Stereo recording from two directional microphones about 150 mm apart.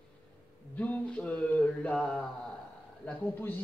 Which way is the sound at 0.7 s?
10° left (ahead or behind).